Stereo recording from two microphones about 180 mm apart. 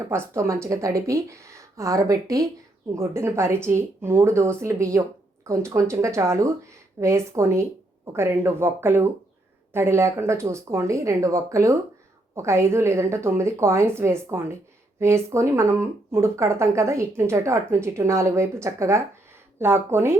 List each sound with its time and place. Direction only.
0.0 s a woman's voice: 15° right (ahead or behind)